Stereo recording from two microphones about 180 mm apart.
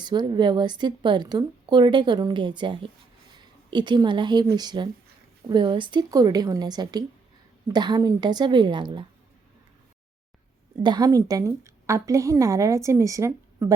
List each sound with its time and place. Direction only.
0.0 s a woman's voice: 25° right (ahead or behind)
10.8 s a woman's voice: 20° right (ahead or behind)